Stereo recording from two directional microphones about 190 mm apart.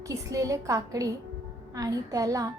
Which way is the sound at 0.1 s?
15° right (ahead or behind).